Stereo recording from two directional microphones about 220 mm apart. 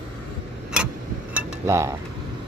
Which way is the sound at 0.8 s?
5° right (ahead or behind).